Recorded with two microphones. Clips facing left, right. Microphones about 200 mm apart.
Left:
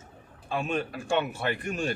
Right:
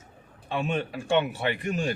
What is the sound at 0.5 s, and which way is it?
Speech, 25° right (ahead or behind).